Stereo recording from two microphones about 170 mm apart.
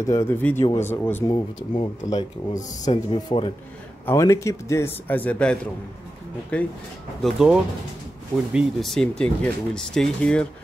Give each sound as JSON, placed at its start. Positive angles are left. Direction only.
{"t": 0.0, "sound": "speech", "side_deg": 15}
{"t": 1.3, "sound": "speech", "side_deg": 30}